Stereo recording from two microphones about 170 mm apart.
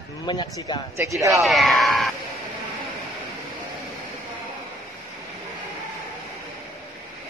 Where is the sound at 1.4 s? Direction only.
Centre (ahead or behind).